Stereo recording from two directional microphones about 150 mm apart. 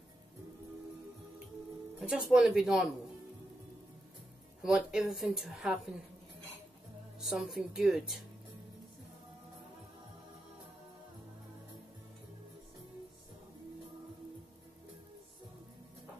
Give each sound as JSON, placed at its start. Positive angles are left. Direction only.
{"t": 2.0, "sound": "speech", "side_deg": -5}
{"t": 4.6, "sound": "speech", "side_deg": -5}
{"t": 7.3, "sound": "speech", "side_deg": 0}